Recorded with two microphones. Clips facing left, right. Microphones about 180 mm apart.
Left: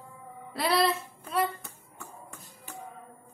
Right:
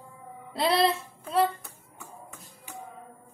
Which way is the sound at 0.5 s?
25° right (ahead or behind).